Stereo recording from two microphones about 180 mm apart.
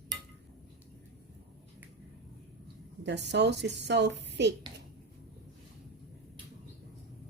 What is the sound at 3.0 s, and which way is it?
A woman's voice, 75° right (ahead or behind).